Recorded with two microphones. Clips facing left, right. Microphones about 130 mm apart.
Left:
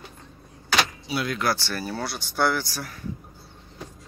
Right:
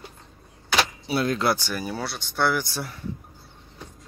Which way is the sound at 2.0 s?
Centre (ahead or behind).